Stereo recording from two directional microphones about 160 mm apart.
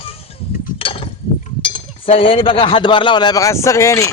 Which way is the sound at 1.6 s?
35° left (ahead or behind).